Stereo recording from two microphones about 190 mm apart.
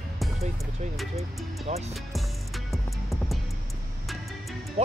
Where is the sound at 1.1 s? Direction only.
35° right (ahead or behind).